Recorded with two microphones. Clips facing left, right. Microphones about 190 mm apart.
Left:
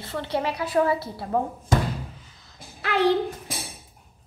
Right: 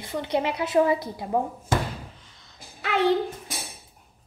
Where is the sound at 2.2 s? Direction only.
Centre (ahead or behind).